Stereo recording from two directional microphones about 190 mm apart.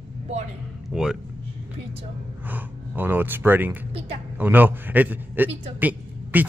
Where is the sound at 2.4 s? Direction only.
10° right (ahead or behind).